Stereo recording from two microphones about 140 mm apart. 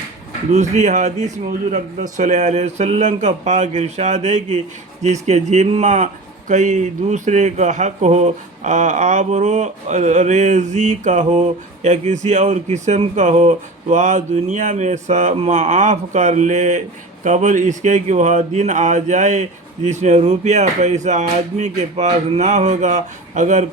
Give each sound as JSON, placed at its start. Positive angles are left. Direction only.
{"t": 0.5, "sound": "speech", "side_deg": -55}